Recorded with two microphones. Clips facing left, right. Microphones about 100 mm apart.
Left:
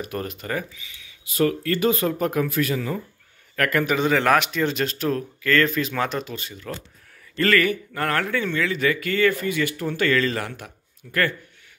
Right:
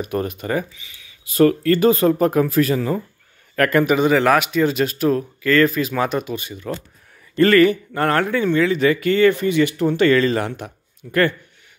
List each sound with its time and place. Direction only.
0.1 s a man's voice: 15° right (ahead or behind)
1.2 s a man's voice: 45° right (ahead or behind)
3.8 s speech: 10° right (ahead or behind)
7.3 s a man's voice: 25° right (ahead or behind)